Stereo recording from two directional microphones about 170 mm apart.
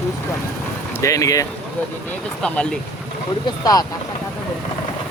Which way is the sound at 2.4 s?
5° left (ahead or behind).